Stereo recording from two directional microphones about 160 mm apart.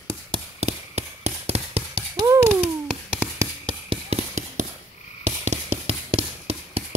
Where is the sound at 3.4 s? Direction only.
30° right (ahead or behind).